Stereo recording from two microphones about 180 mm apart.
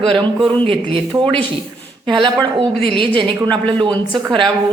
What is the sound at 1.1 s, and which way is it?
Speech, 5° left (ahead or behind).